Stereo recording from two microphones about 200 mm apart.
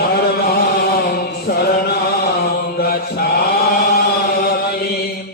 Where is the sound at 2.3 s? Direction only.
50° left (ahead or behind).